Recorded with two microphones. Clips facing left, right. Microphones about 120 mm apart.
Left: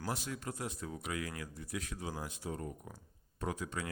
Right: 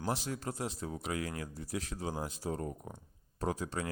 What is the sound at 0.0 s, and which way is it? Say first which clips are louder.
Speech: right 4 dB; 30° right (ahead or behind).